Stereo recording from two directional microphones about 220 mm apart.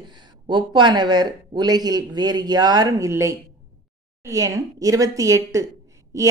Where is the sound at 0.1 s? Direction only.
20° right (ahead or behind).